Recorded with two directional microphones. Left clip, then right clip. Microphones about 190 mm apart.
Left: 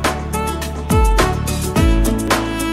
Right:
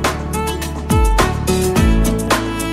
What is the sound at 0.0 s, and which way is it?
Music, centre (ahead or behind).